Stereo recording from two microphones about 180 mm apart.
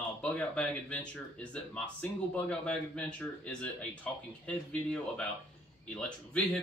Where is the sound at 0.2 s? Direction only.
5° left (ahead or behind).